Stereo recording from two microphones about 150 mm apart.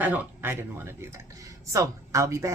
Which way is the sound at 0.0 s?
10° right (ahead or behind).